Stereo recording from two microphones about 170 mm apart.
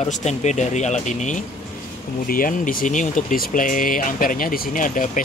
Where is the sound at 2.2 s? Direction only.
55° left (ahead or behind).